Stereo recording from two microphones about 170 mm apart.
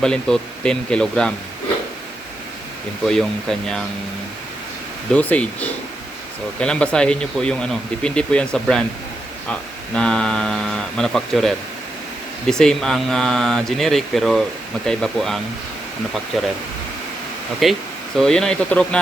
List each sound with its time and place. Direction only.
0.0 s speech: 5° left (ahead or behind)
3.1 s speech: 5° left (ahead or behind)
5.1 s speech: 10° left (ahead or behind)
17.6 s speech: centre (ahead or behind)